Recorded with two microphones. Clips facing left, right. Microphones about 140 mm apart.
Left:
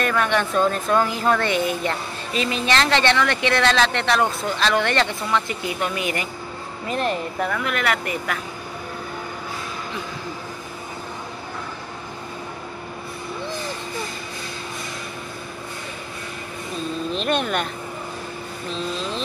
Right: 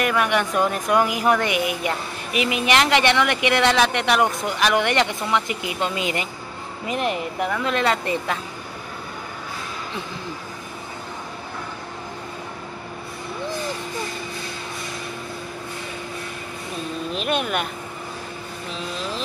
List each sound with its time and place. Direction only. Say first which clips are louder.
0.0 s a woman's voice: even; 10° right (ahead or behind)
17.1 s a woman's voice: left 1 dB; 5° right (ahead or behind)